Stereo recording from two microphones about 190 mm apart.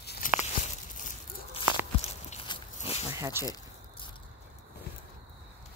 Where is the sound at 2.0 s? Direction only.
30° left (ahead or behind).